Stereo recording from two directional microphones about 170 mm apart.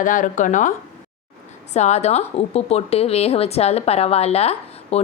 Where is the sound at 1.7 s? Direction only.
40° left (ahead or behind).